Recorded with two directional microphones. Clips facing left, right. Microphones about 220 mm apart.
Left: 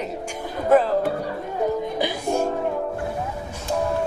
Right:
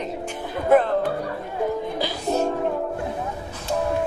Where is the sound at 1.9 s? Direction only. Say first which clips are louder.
Left 1 dB; 10° left (ahead or behind).